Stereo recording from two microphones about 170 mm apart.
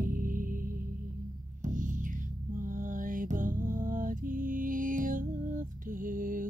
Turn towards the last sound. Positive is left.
turn(degrees=-55)  # may be behind; listen again after turning